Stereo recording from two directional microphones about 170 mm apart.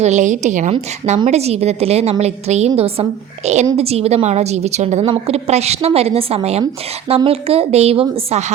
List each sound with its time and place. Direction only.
0.0 s a woman's voice: 45° right (ahead or behind)